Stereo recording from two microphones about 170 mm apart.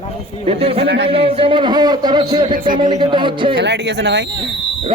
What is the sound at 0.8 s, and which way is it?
Speech, 90° right.